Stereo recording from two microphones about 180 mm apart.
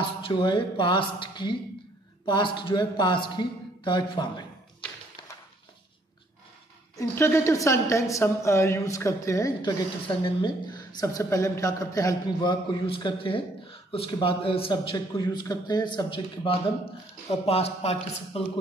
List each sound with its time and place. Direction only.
0.0 s a woman's voice: 25° left (ahead or behind)
7.0 s a woman's voice: 15° left (ahead or behind); by 18.4 s 35° left (ahead or behind)